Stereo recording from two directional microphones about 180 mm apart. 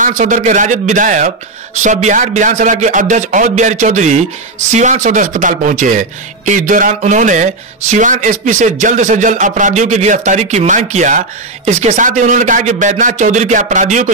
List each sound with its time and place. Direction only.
0.0 s speech: 45° right (ahead or behind)